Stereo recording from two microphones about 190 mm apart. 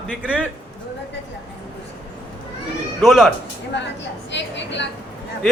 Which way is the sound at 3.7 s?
70° left (ahead or behind).